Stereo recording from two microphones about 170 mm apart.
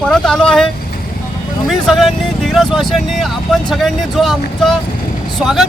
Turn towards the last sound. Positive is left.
turn(degrees=-5)  # may be behind; listen again after turning